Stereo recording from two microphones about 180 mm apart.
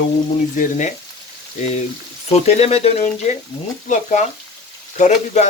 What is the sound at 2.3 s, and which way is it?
Speech, 35° left (ahead or behind).